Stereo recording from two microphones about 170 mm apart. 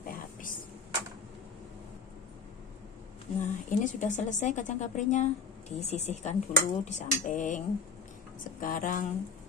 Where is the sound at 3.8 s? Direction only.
45° left (ahead or behind).